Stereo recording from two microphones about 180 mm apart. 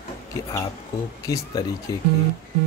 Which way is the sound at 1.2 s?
20° left (ahead or behind).